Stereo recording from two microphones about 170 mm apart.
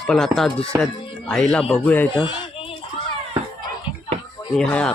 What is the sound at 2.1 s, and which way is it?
Speech, 30° left (ahead or behind).